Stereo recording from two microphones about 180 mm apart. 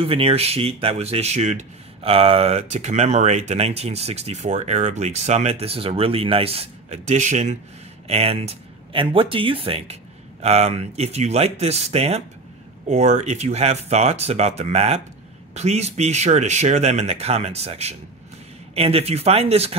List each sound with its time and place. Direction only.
0.0 s speech: 30° right (ahead or behind)